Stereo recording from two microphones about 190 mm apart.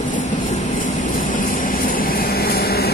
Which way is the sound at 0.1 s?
40° left (ahead or behind).